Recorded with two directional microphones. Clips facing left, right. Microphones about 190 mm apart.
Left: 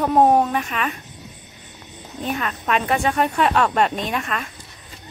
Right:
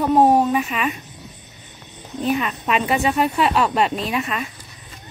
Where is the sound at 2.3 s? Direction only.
5° right (ahead or behind).